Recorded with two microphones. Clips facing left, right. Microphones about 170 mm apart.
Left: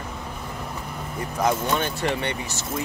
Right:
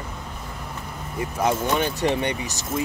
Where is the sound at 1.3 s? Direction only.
10° right (ahead or behind).